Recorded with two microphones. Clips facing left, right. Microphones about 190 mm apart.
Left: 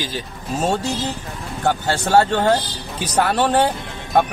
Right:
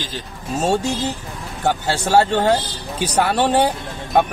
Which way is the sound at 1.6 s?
10° right (ahead or behind).